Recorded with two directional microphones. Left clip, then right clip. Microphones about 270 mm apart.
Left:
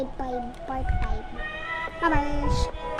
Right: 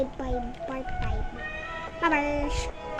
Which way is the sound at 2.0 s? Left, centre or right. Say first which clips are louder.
Right 1 dB; centre.